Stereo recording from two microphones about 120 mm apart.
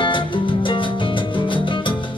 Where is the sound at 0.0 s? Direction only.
45° left (ahead or behind).